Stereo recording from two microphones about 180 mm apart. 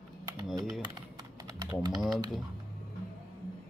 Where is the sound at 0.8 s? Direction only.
20° right (ahead or behind).